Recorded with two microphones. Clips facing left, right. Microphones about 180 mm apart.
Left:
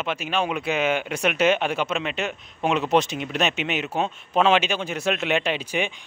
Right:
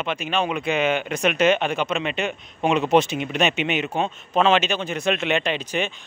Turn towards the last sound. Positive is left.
turn(degrees=10)  # may be behind; listen again after turning